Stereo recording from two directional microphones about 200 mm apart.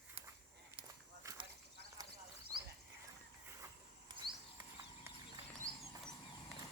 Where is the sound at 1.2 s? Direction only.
15° right (ahead or behind).